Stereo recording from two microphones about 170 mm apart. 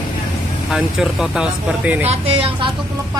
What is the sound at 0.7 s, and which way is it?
Speech, 5° right (ahead or behind).